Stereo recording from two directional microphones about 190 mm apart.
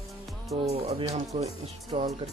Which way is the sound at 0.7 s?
30° right (ahead or behind).